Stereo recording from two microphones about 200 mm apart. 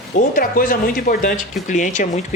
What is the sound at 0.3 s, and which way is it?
Speech, 45° left (ahead or behind).